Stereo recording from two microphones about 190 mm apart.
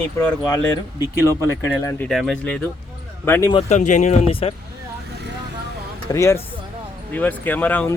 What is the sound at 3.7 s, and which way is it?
Speech, 40° left (ahead or behind).